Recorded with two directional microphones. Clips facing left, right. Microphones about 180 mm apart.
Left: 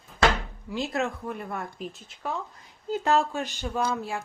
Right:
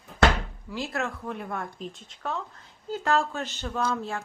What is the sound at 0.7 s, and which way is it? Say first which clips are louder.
Speech: left 3 dB; 20° left (ahead or behind).